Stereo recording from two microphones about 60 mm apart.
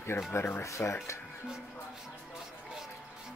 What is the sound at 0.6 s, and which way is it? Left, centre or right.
Speech, left.